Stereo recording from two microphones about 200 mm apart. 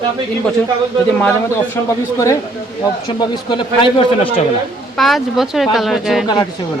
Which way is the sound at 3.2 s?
20° left (ahead or behind).